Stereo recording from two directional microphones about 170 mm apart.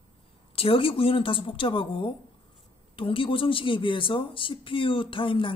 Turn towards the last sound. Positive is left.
turn(degrees=30)  # may be behind; listen again after turning